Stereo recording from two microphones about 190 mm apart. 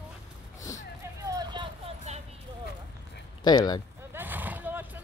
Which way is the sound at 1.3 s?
20° right (ahead or behind).